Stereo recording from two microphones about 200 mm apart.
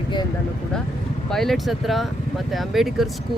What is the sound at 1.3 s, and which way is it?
Speech, centre (ahead or behind).